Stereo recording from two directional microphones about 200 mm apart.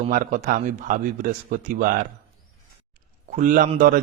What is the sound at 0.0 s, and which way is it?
Speech, 40° right (ahead or behind).